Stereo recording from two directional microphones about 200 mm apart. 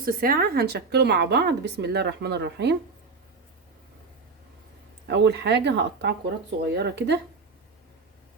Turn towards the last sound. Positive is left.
turn(degrees=-55)  # may be behind; listen again after turning